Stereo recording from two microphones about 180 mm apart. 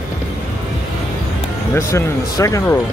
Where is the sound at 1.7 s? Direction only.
15° left (ahead or behind).